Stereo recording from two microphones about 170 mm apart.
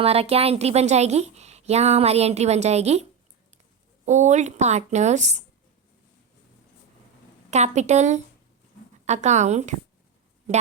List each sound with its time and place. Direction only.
0.0 s a woman's voice: 35° right (ahead or behind)
7.5 s speech: 40° right (ahead or behind)